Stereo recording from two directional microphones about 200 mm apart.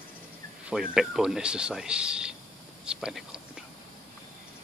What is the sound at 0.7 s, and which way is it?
Speech, centre (ahead or behind).